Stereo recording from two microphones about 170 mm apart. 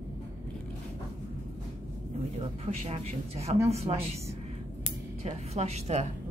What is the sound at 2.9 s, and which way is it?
A woman's voice, 40° right (ahead or behind).